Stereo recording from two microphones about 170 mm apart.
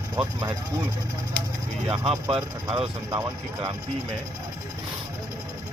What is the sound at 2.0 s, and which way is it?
Speech, 30° right (ahead or behind).